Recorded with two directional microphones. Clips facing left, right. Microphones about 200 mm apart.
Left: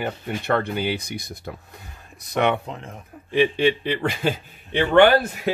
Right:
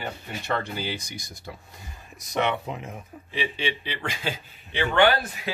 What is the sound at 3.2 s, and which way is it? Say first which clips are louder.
A man's voice: left 11 dB; 55° left (ahead or behind).